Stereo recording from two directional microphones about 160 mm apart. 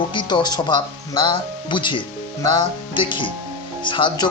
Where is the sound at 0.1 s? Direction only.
30° left (ahead or behind).